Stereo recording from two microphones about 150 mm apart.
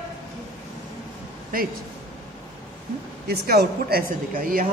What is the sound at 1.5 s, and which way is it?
Speech, 75° right (ahead or behind).